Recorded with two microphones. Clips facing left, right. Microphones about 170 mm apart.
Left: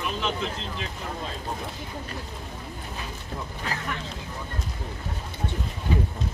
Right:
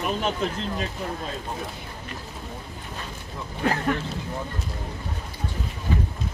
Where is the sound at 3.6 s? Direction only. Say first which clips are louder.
Right 11 dB; 50° right (ahead or behind).